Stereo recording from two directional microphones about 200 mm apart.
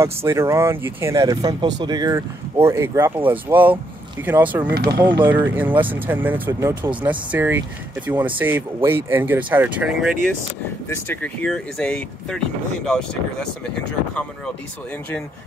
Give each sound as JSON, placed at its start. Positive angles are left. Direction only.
{"t": 0.0, "sound": "speech", "side_deg": -15}
{"t": 4.7, "sound": "speech", "side_deg": -50}
{"t": 5.2, "sound": "speech", "side_deg": -10}
{"t": 10.9, "sound": "speech", "side_deg": 5}